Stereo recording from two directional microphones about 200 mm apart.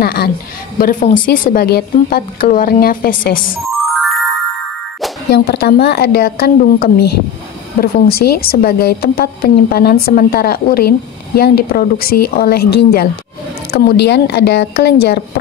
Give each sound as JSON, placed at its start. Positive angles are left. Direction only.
{"t": 0.0, "sound": "a woman's voice", "side_deg": 50}
{"t": 5.3, "sound": "a woman's voice", "side_deg": 50}